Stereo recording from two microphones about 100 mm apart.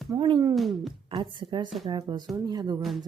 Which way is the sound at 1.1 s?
55° right (ahead or behind).